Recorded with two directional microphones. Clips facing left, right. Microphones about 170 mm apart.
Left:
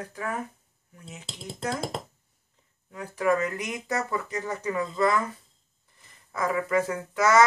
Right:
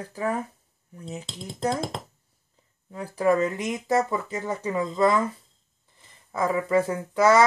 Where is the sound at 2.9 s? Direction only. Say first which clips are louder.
Right 3 dB; 30° right (ahead or behind).